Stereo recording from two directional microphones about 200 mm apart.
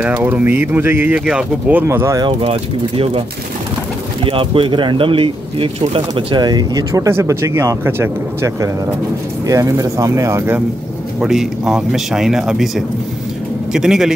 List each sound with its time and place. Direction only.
0.0 s speech: 10° right (ahead or behind); by 3.2 s 30° right (ahead or behind)
4.2 s speech: 25° right (ahead or behind); by 14.1 s centre (ahead or behind)